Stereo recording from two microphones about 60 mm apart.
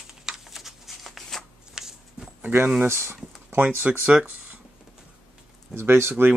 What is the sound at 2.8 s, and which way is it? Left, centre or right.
Speech, right.